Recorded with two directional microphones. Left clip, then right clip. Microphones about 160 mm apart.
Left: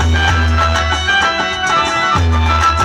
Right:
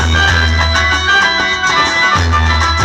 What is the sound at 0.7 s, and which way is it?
Music, 40° left (ahead or behind).